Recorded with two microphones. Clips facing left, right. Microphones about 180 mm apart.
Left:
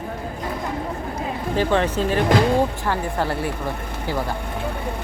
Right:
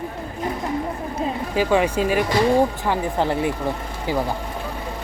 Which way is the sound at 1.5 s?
10° right (ahead or behind).